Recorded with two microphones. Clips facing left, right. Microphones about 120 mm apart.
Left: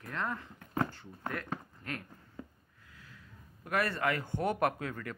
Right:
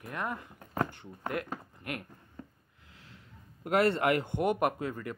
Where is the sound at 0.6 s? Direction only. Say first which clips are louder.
Right 1 dB; 40° right (ahead or behind).